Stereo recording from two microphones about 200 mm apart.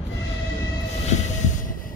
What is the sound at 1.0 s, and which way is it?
Train, 35° left (ahead or behind).